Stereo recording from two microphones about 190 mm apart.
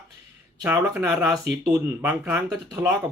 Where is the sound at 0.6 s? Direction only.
10° right (ahead or behind).